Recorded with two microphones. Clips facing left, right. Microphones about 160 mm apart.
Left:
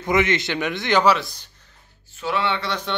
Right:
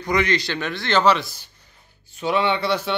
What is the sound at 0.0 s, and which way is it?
A man's voice, 20° left (ahead or behind).